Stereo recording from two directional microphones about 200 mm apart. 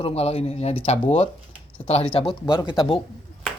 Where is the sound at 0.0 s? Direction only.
30° left (ahead or behind).